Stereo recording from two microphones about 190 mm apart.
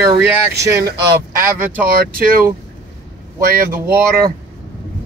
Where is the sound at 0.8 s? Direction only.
55° right (ahead or behind).